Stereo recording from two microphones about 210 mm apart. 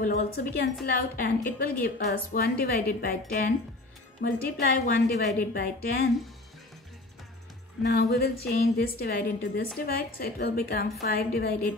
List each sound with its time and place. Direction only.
0.0 s a woman's voice: 45° left (ahead or behind)
8.1 s a woman's voice: 45° left (ahead or behind)